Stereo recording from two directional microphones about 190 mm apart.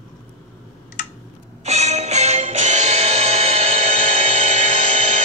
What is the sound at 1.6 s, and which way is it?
Music, 35° right (ahead or behind).